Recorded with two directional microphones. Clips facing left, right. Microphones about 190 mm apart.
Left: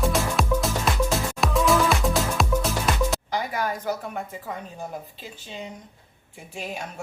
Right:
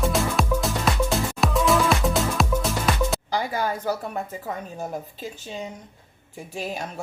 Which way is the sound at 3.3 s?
30° right (ahead or behind).